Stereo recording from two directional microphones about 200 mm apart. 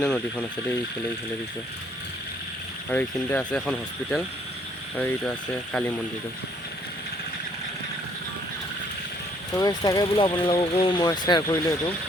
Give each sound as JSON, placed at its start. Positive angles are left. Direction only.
{"t": 0.0, "sound": "speech", "side_deg": 5}
{"t": 2.9, "sound": "speech", "side_deg": 10}
{"t": 9.5, "sound": "speech", "side_deg": 20}